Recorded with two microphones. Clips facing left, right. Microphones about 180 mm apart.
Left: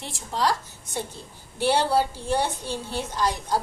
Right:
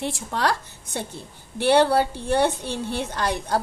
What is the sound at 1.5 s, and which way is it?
A woman's voice, 65° right (ahead or behind).